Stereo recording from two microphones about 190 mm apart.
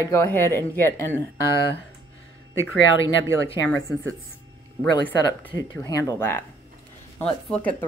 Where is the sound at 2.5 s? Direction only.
85° left.